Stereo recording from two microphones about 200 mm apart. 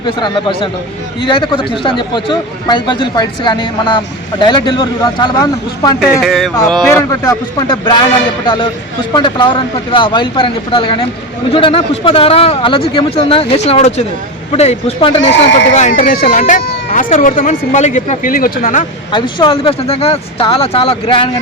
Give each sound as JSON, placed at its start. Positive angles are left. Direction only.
{"t": 0.0, "sound": "a man's voice", "side_deg": 25}
{"t": 6.2, "sound": "a sound", "side_deg": 0}
{"t": 6.8, "sound": "a man's voice", "side_deg": 15}
{"t": 9.1, "sound": "a man's voice", "side_deg": 25}
{"t": 15.2, "sound": "speech", "side_deg": 65}
{"t": 15.7, "sound": "speech", "side_deg": 40}
{"t": 19.1, "sound": "a man's voice", "side_deg": 25}